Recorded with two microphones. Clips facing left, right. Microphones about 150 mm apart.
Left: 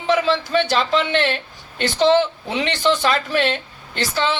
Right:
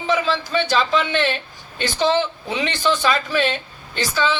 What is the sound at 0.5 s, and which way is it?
Speech, 60° left (ahead or behind).